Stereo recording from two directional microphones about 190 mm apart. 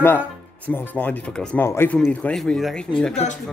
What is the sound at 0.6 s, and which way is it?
Speech, 10° left (ahead or behind).